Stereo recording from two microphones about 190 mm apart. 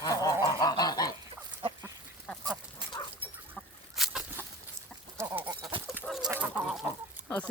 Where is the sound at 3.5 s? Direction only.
Centre (ahead or behind).